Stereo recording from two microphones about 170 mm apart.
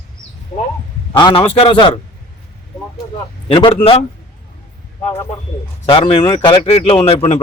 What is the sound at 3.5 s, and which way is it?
Speech, 30° left (ahead or behind).